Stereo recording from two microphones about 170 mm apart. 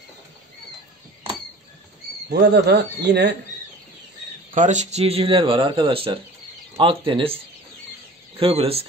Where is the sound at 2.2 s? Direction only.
75° right (ahead or behind).